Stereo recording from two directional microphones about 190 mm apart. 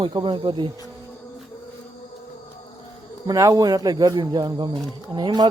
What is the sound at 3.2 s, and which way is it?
Speech, 20° right (ahead or behind).